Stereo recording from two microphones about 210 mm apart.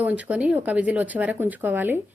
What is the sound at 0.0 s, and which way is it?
A woman's voice, 5° right (ahead or behind).